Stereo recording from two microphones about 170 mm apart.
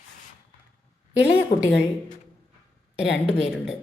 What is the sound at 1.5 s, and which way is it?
Speech, 70° left (ahead or behind).